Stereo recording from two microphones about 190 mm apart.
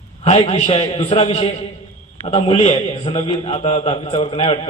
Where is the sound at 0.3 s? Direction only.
30° left (ahead or behind).